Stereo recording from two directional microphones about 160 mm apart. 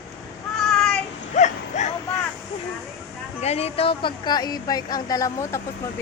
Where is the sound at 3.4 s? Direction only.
40° left (ahead or behind).